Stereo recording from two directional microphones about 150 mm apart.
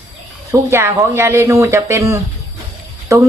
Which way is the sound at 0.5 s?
15° right (ahead or behind).